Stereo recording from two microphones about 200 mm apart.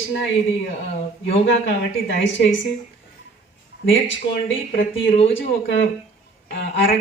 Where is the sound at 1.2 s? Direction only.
65° left (ahead or behind).